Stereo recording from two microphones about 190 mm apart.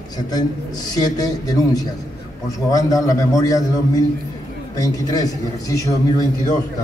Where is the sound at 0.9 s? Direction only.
20° left (ahead or behind).